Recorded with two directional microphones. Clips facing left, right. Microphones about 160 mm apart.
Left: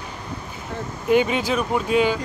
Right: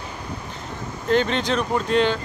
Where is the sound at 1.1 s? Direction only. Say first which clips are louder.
Left 2 dB; 10° left (ahead or behind).